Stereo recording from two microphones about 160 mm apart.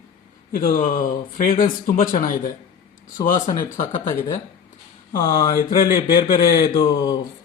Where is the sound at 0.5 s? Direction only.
60° left (ahead or behind).